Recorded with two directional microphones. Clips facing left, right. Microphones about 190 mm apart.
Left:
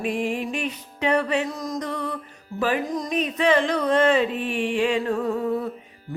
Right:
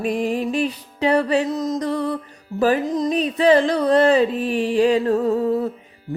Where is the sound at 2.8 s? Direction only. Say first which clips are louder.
Right 5 dB; 25° right (ahead or behind).